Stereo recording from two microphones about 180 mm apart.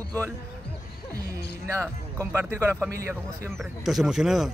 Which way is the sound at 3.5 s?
Centre (ahead or behind).